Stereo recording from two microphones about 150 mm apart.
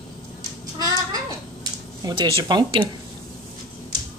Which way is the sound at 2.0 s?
30° right (ahead or behind).